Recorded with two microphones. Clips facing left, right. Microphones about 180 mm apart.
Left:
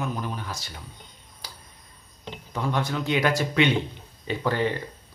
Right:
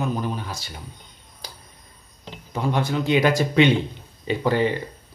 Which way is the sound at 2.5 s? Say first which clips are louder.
Right 4 dB; 20° right (ahead or behind).